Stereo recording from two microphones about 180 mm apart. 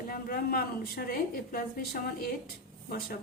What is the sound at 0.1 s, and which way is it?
A woman's voice, 55° left (ahead or behind).